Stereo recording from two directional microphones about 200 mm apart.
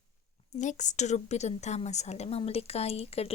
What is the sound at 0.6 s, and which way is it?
A woman's voice, 35° left (ahead or behind).